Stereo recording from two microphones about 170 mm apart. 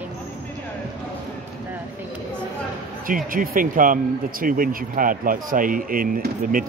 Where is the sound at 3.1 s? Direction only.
55° right (ahead or behind).